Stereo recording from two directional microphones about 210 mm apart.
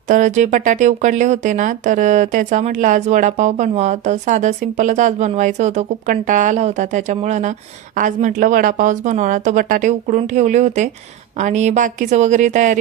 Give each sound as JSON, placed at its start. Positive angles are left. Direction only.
{"t": 0.1, "sound": "speech", "side_deg": -35}